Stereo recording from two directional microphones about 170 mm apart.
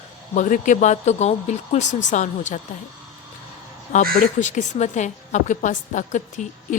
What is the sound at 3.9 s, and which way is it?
Speech, 45° left (ahead or behind).